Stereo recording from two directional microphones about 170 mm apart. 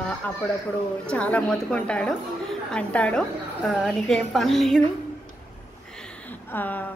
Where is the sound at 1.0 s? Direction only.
5° left (ahead or behind).